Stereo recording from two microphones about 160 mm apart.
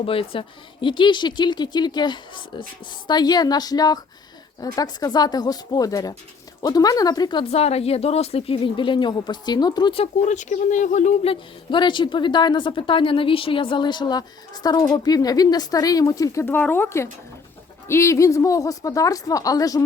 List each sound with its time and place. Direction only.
0.0 s a woman's voice: 35° left (ahead or behind)
7.5 s a woman's voice: 40° left (ahead or behind); by 19.8 s 20° left (ahead or behind)